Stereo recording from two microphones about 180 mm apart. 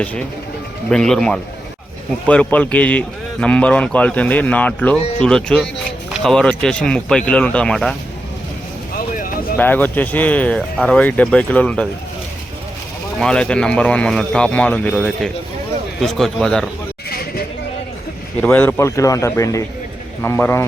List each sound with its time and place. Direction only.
0.9 s speech: 5° left (ahead or behind)
9.0 s a sound: 50° left (ahead or behind)
9.6 s speech: 10° left (ahead or behind)
13.1 s speech: 5° left (ahead or behind)
17.1 s a sound: 60° left (ahead or behind)
18.4 s speech: 10° left (ahead or behind)